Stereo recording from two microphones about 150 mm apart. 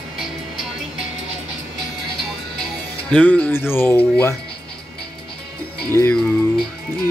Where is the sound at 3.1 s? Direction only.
10° left (ahead or behind).